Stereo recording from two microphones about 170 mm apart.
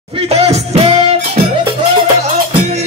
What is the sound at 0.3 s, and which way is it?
Music, 40° right (ahead or behind).